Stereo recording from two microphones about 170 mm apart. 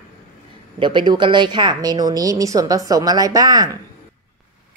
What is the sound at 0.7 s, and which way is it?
A woman's voice, 30° right (ahead or behind).